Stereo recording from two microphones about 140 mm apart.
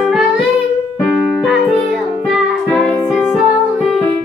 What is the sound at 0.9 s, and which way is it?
Keyboard, 5° right (ahead or behind).